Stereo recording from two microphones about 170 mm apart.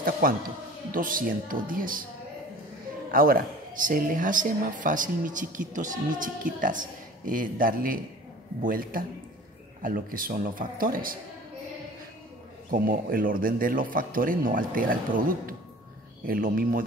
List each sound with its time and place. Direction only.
0.9 s a man's voice: 55° right (ahead or behind)
3.1 s a man's voice: 60° right (ahead or behind)
12.7 s a man's voice: 55° right (ahead or behind)